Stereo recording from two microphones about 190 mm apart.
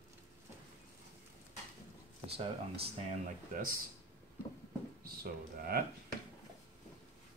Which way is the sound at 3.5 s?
50° right (ahead or behind).